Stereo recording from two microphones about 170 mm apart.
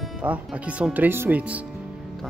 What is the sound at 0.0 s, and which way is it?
Speech, 5° right (ahead or behind).